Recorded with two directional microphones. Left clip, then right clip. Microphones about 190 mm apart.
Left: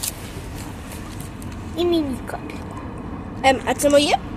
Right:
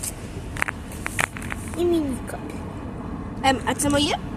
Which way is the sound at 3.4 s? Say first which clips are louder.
Left 4 dB; 35° right (ahead or behind).